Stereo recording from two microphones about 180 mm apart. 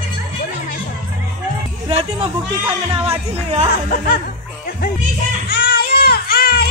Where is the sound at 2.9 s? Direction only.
35° right (ahead or behind).